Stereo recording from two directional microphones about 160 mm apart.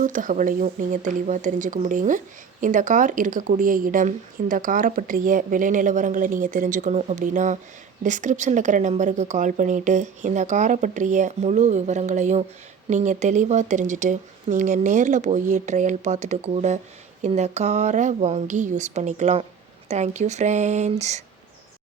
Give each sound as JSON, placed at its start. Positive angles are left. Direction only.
{"t": 0.0, "sound": "speech", "side_deg": -55}